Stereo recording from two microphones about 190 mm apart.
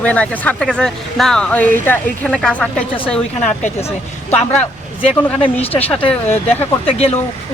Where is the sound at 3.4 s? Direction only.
40° left (ahead or behind).